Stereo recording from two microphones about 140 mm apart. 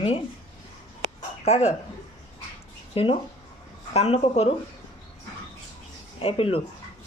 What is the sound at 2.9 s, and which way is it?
Speech, 40° left (ahead or behind).